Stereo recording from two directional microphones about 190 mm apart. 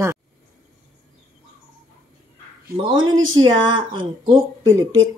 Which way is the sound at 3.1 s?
90° right.